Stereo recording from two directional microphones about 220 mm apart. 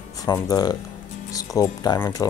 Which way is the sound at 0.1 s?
15° left (ahead or behind).